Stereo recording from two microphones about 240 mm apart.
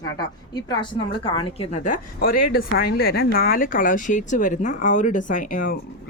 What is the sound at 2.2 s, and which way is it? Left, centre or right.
Speech, left.